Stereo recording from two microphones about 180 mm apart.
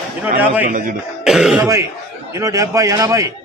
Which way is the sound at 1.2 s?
5° right (ahead or behind).